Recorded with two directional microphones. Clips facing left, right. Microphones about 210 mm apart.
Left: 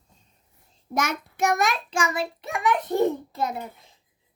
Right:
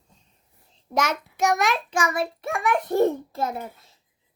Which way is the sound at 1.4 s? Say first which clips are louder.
Right 1 dB; 55° left (ahead or behind).